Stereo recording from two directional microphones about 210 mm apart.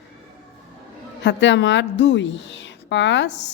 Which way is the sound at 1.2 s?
60° left (ahead or behind).